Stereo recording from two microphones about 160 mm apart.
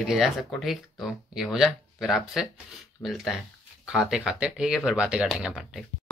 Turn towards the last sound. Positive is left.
turn(degrees=0)  # may be behind; listen again after turning